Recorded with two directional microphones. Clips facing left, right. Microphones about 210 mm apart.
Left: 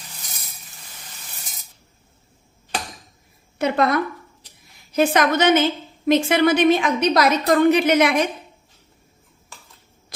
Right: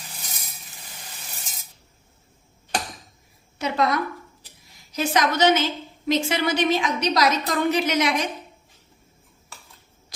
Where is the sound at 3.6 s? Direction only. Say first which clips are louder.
Left 4 dB; 55° left (ahead or behind).